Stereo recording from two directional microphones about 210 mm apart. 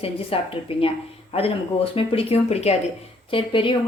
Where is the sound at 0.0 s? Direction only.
25° left (ahead or behind).